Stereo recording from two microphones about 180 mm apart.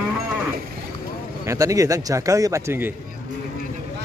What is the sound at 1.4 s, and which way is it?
Speech, 20° right (ahead or behind).